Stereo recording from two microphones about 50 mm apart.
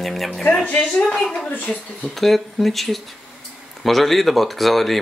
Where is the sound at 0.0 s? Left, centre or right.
Centre.